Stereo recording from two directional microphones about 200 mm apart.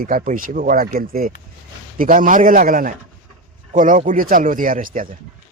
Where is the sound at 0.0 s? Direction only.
45° right (ahead or behind).